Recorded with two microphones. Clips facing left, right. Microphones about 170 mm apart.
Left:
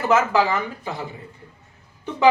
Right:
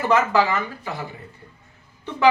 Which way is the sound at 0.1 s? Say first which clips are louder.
Left 1 dB; 10° left (ahead or behind).